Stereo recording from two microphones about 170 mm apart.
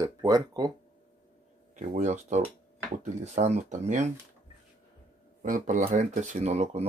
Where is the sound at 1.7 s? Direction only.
45° right (ahead or behind).